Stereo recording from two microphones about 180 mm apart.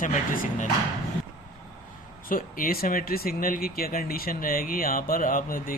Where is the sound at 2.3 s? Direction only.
50° left (ahead or behind).